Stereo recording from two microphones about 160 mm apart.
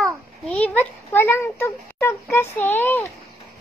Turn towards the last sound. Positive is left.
turn(degrees=10)  # may be behind; listen again after turning